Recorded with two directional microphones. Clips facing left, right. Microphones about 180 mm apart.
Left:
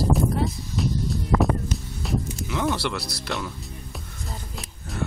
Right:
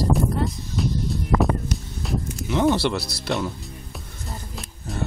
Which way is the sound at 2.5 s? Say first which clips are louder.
Right 6 dB; 25° right (ahead or behind).